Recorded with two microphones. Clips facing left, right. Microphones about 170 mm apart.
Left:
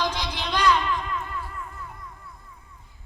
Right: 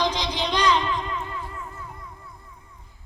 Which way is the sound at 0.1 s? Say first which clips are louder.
Right 4 dB; 15° right (ahead or behind).